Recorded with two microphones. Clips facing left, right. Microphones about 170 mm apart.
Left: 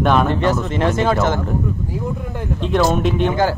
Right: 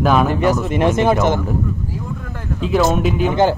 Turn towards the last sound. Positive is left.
turn(degrees=-20)  # may be behind; listen again after turning